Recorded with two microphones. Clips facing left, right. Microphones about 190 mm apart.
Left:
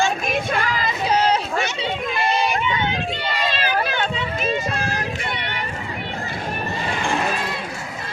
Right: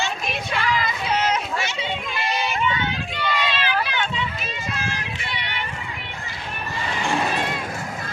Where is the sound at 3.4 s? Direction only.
45° left (ahead or behind).